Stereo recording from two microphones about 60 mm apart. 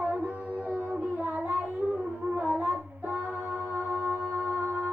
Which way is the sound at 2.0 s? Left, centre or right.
Right.